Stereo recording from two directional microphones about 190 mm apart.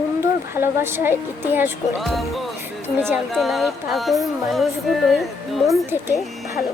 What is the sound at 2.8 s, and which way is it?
Speech, 10° right (ahead or behind).